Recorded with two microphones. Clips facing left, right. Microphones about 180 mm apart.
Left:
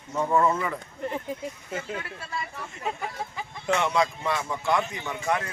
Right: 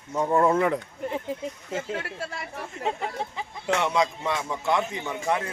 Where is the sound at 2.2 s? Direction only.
90° right.